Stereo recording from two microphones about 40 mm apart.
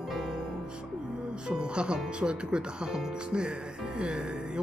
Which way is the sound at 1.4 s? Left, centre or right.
Right.